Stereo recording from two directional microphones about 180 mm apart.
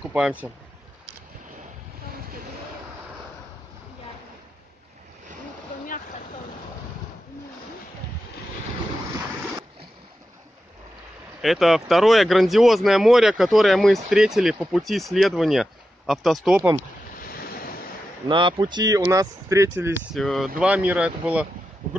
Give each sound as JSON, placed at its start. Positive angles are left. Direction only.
{"t": 0.1, "sound": "speech", "side_deg": -5}
{"t": 11.4, "sound": "speech", "side_deg": 0}
{"t": 17.2, "sound": "waves", "side_deg": 55}
{"t": 18.3, "sound": "speech", "side_deg": -25}
{"t": 20.2, "sound": "speech", "side_deg": 0}